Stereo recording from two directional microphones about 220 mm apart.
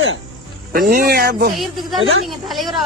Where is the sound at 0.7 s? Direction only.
40° right (ahead or behind).